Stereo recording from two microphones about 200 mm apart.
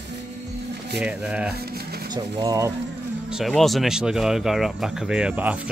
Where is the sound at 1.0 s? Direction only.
5° right (ahead or behind).